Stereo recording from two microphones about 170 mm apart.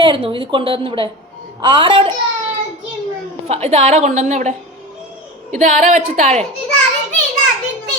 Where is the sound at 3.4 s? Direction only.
40° right (ahead or behind).